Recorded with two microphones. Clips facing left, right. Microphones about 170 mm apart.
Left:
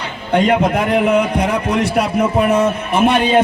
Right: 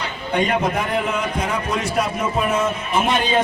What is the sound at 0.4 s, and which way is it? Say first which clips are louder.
A man's voice: left 7 dB; 65° left (ahead or behind).